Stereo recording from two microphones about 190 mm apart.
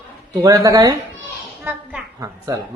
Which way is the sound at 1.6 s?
5° right (ahead or behind).